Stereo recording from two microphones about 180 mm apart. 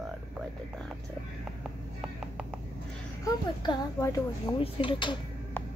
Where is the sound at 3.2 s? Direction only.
20° left (ahead or behind).